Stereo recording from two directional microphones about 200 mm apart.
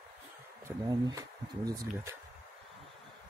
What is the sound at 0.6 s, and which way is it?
Speech, 15° right (ahead or behind).